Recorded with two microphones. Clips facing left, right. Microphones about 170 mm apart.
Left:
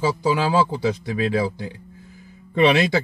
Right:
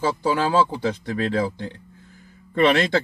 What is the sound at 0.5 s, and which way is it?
Speech, 10° left (ahead or behind).